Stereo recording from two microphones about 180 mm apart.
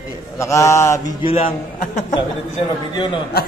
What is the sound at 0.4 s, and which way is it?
Mantra, 15° left (ahead or behind).